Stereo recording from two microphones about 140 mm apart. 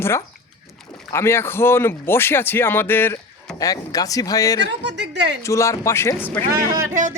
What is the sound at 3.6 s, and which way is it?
Speech, 25° left (ahead or behind).